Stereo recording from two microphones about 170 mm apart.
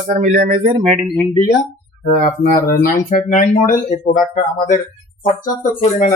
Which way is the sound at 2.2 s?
50° left (ahead or behind).